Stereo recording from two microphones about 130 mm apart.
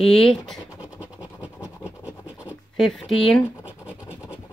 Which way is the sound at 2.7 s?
Centre (ahead or behind).